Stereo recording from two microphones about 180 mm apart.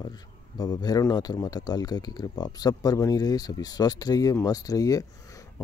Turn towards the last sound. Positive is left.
turn(degrees=20)  # may be behind; listen again after turning